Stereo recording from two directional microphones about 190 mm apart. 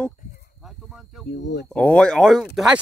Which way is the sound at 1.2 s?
60° left (ahead or behind).